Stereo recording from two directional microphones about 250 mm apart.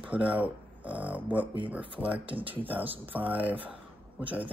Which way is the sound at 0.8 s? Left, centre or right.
Centre.